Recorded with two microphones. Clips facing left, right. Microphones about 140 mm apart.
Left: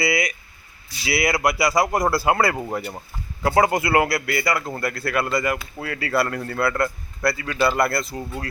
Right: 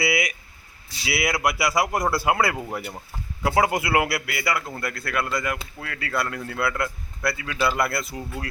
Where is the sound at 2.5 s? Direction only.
25° left (ahead or behind).